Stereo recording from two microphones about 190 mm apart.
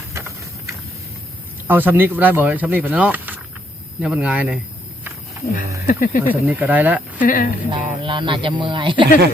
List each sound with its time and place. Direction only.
1.6 s speech: 10° right (ahead or behind)
5.5 s speech: 50° left (ahead or behind)
6.3 s speech: 10° right (ahead or behind)
7.2 s speech: 45° left (ahead or behind)
7.7 s speech: 25° right (ahead or behind)